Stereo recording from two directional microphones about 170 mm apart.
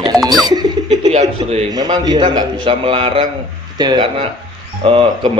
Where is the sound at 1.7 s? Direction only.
25° right (ahead or behind).